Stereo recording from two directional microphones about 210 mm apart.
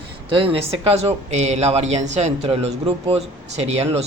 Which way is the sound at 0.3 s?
25° right (ahead or behind).